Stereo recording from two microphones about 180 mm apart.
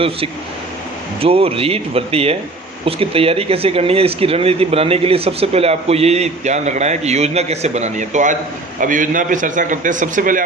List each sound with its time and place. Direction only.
1.2 s a man's voice: 30° right (ahead or behind); by 10.4 s 50° right (ahead or behind)